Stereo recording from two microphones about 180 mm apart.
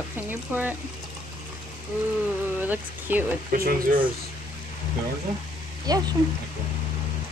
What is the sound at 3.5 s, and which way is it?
Speech, 55° right (ahead or behind).